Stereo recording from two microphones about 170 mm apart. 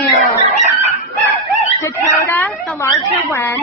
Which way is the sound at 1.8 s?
15° left (ahead or behind).